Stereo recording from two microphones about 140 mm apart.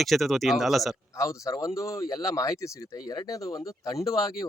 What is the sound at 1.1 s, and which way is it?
Speech, 25° left (ahead or behind).